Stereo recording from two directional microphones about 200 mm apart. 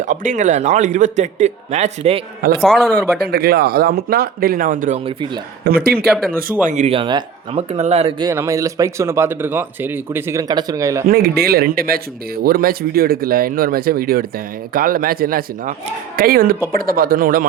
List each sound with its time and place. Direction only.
0.0 s speech: 40° right (ahead or behind)
2.6 s a man's voice: centre (ahead or behind)
3.2 s speech: 50° right (ahead or behind)
5.0 s speech: 25° right (ahead or behind)
5.6 s speech: 50° right (ahead or behind)
6.7 s speech: 35° right (ahead or behind)
8.2 s speech: 15° right (ahead or behind)
11.1 s speech: 50° right (ahead or behind)